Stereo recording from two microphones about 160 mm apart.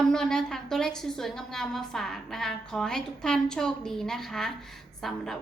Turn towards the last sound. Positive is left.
turn(degrees=0)  # may be behind; listen again after turning